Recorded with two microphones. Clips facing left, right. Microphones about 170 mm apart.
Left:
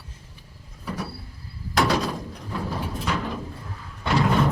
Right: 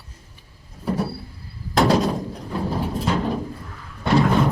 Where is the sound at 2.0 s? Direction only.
25° right (ahead or behind).